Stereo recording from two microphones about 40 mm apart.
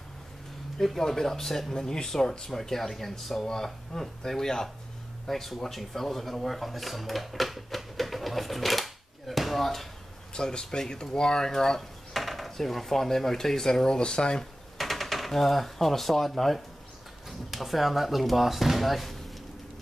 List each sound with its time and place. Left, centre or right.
0.7 s speech: centre
5.2 s speech: centre
10.3 s speech: centre
12.1 s speech: centre
14.8 s speech: centre